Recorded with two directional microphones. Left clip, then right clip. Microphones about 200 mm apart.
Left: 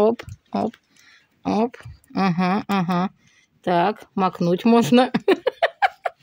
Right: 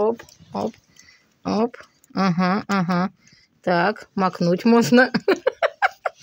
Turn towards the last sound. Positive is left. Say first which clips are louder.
# left 1 dB
turn(degrees=15)  # may be behind; listen again after turning